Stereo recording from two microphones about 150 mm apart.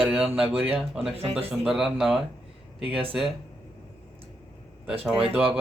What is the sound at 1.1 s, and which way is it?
Speech, 40° right (ahead or behind).